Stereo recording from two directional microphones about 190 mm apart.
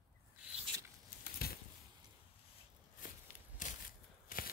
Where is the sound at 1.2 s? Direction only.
55° left (ahead or behind).